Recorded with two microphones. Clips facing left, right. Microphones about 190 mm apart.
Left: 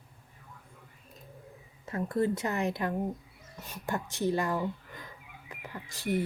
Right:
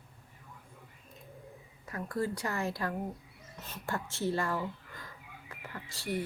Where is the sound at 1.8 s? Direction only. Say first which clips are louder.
Left 5 dB; 25° left (ahead or behind).